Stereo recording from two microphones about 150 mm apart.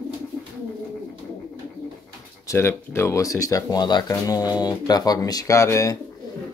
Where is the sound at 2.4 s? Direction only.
20° left (ahead or behind).